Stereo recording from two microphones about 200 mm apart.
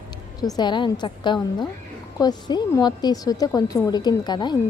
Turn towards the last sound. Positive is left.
turn(degrees=20)  # may be behind; listen again after turning